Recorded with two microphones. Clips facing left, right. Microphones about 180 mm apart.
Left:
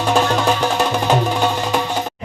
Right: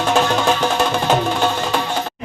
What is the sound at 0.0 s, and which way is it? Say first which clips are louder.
Music: even; 5° left (ahead or behind).